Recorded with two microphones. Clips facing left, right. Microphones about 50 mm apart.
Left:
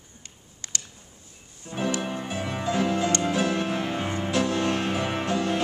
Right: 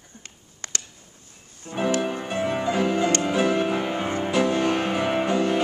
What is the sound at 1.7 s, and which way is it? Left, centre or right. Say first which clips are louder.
Music: right 4 dB; right.